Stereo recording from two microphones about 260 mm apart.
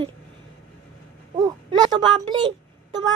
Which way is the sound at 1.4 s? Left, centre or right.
Centre.